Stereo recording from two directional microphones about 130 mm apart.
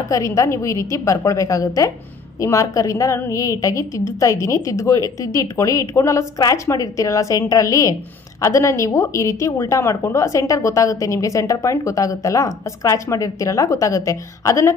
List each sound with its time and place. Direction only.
0.1 s a woman's voice: 25° left (ahead or behind)